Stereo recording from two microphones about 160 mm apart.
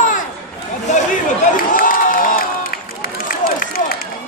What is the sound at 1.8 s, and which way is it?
Crowd, 60° left (ahead or behind).